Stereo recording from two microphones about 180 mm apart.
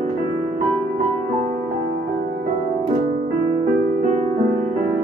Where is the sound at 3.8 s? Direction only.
50° right (ahead or behind).